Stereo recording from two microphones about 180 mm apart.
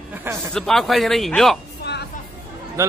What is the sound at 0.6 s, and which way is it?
A man's voice, centre (ahead or behind).